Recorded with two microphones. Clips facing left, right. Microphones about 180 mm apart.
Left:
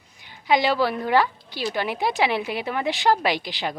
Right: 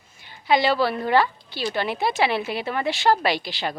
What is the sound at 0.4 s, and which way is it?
A woman's voice, 15° left (ahead or behind).